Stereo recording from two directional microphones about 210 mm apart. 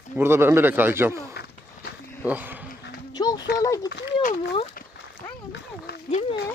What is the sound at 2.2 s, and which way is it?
Speech, 10° right (ahead or behind).